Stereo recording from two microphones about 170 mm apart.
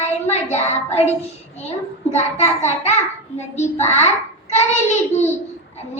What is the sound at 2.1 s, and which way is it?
A woman's voice, 40° left (ahead or behind).